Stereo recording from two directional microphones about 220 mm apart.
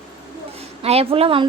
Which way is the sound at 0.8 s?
25° right (ahead or behind).